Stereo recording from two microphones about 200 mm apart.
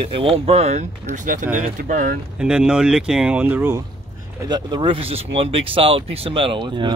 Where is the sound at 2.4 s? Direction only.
5° right (ahead or behind).